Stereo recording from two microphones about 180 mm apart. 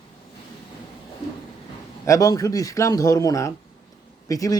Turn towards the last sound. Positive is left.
turn(degrees=20)  # may be behind; listen again after turning